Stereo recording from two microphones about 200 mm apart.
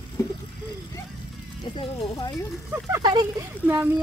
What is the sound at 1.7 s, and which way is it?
Speech, 20° left (ahead or behind).